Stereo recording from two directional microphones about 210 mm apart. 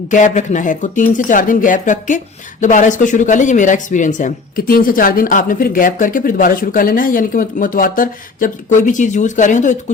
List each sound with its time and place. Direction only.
0.1 s speech: 35° left (ahead or behind)